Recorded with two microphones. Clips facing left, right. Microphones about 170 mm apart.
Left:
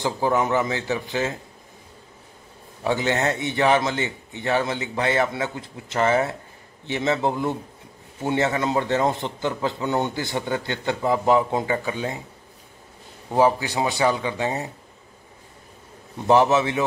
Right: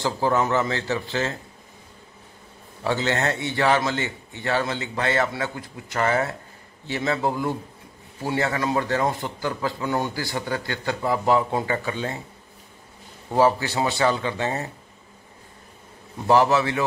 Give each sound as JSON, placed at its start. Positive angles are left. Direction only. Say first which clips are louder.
{"t": 0.0, "sound": "speech", "louder": "even", "side_deg": 15}
{"t": 2.8, "sound": "a man's voice", "louder": "left 1 dB", "side_deg": 15}
{"t": 13.3, "sound": "speech", "louder": "even", "side_deg": 15}
{"t": 16.3, "sound": "a man's voice", "louder": "left 1 dB", "side_deg": 20}